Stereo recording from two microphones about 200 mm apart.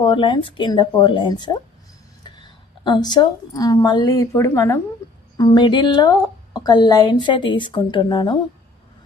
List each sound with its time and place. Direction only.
0.0 s a woman's voice: 25° left (ahead or behind)